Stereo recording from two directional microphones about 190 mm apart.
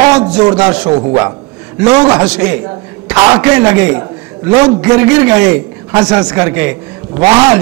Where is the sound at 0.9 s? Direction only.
25° right (ahead or behind).